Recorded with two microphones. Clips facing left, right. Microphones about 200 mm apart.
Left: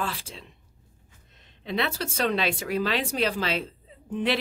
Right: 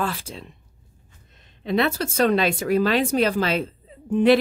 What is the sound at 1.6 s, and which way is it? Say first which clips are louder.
Speech: right 7 dB; 45° right (ahead or behind).